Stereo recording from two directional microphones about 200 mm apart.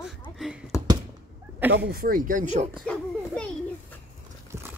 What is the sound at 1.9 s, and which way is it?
Speech, 45° right (ahead or behind).